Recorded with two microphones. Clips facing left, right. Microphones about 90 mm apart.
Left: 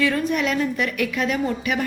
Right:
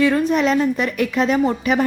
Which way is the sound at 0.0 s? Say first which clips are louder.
Right 5 dB; 25° right (ahead or behind).